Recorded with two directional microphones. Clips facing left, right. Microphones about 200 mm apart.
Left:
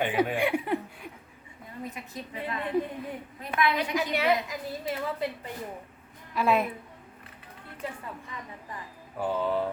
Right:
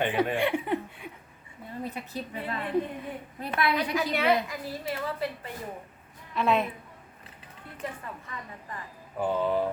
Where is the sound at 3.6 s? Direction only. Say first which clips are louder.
Even; 35° right (ahead or behind).